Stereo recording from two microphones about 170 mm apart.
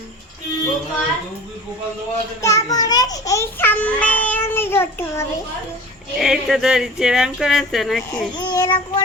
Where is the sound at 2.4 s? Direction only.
20° left (ahead or behind).